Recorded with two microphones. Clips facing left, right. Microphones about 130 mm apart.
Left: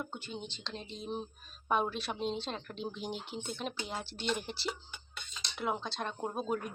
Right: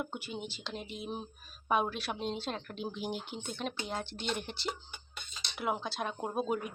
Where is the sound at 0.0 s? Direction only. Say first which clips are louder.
Right 2 dB; 10° right (ahead or behind).